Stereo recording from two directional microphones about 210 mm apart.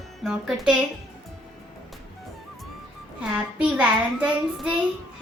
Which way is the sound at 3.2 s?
5° right (ahead or behind).